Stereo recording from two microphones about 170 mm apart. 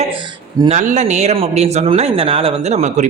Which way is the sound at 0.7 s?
45° right (ahead or behind).